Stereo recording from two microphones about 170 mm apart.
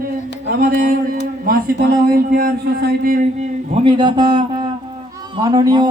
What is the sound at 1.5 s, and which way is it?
Music, 60° right (ahead or behind).